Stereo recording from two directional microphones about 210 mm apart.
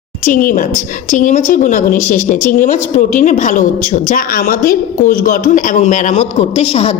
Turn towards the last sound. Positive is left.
turn(degrees=30)  # may be behind; listen again after turning